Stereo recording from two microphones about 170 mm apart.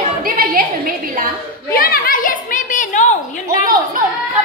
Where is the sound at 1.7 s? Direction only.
60° left (ahead or behind).